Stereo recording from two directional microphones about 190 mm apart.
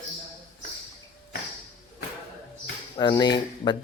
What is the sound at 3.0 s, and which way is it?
Speech, 20° left (ahead or behind).